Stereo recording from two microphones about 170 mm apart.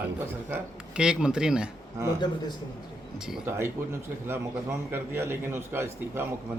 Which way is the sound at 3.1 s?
5° right (ahead or behind).